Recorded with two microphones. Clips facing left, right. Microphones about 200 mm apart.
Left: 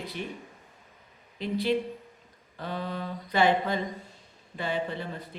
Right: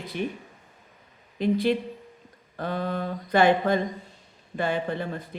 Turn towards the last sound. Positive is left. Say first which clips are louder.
# right 5 dB
turn(degrees=-50)  # may be behind; listen again after turning